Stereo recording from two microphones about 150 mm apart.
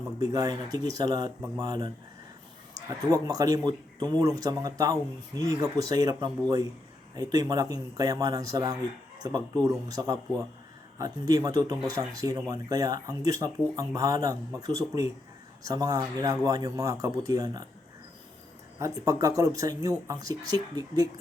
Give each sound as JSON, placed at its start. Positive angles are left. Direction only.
{"t": 0.2, "sound": "speech", "side_deg": -25}
{"t": 3.0, "sound": "speech", "side_deg": -25}
{"t": 18.8, "sound": "speech", "side_deg": -20}